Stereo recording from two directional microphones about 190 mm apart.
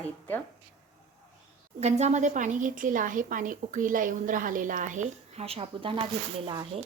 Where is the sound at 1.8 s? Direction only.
35° right (ahead or behind).